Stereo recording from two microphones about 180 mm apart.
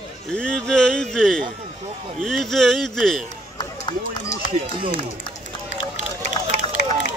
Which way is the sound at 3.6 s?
25° left (ahead or behind).